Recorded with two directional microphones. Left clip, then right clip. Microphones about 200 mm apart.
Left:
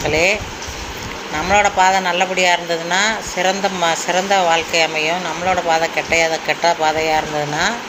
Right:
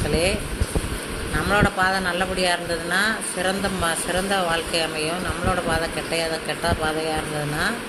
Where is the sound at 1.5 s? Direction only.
5° left (ahead or behind).